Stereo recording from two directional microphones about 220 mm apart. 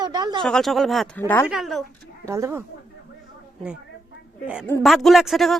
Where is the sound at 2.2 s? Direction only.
10° right (ahead or behind).